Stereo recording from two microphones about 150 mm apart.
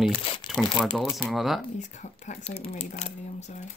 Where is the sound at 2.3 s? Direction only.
40° left (ahead or behind).